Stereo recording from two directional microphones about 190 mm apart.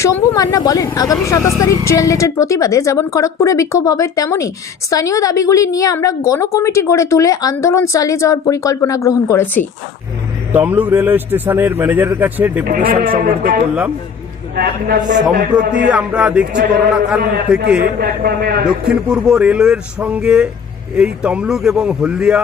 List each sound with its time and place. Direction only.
0.0 s speech: 20° left (ahead or behind)
10.5 s a man's voice: 10° right (ahead or behind)
12.6 s speech: 50° right (ahead or behind)
15.9 s speech: 5° right (ahead or behind)
18.0 s speech: 50° right (ahead or behind)
18.6 s speech: 5° right (ahead or behind)